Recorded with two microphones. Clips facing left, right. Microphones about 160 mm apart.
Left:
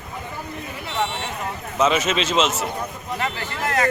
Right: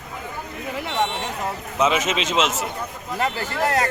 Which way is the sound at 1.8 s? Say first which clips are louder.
Left 1 dB; 15° right (ahead or behind).